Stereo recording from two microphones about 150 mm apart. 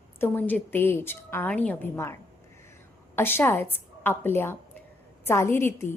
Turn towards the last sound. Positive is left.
turn(degrees=15)  # may be behind; listen again after turning